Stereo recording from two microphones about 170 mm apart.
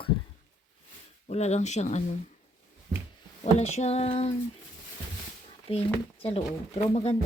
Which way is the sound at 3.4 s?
40° left (ahead or behind).